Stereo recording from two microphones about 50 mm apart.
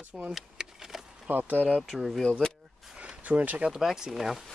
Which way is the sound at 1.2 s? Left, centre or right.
Right.